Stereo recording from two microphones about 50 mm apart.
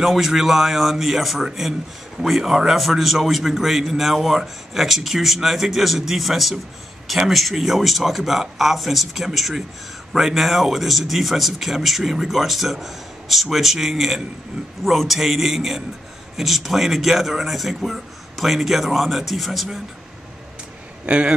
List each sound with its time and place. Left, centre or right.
0.0 s a man's voice: centre
21.0 s a man's voice: right